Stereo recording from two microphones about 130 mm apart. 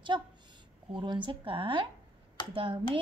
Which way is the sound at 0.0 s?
35° right (ahead or behind).